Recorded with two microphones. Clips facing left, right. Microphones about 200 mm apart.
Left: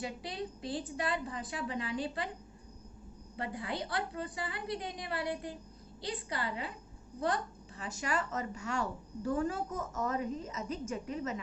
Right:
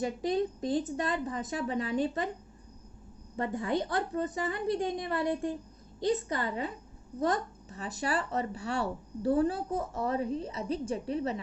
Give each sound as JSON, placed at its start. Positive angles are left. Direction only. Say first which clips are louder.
{"t": 0.0, "sound": "speech", "louder": "right 10 dB", "side_deg": -45}
{"t": 3.3, "sound": "a woman's voice", "louder": "right 7 dB", "side_deg": -45}